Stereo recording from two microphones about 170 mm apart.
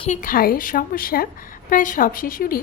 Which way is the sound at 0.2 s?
55° left (ahead or behind).